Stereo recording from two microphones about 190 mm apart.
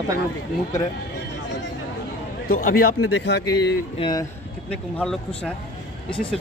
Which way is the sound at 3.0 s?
70° left (ahead or behind).